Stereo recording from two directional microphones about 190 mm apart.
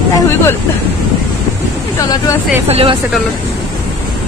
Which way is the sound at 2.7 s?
30° right (ahead or behind).